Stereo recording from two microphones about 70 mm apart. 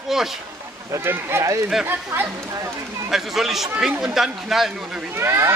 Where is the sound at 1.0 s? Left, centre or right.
Right.